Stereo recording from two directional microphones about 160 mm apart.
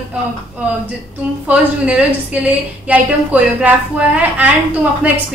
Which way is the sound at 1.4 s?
10° right (ahead or behind).